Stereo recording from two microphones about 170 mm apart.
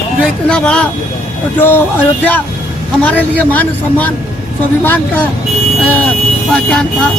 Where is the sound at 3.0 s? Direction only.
10° left (ahead or behind).